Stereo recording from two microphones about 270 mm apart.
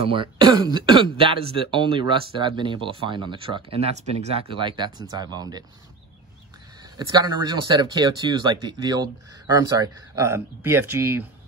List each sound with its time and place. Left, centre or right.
0.0 s speech: centre
7.0 s speech: centre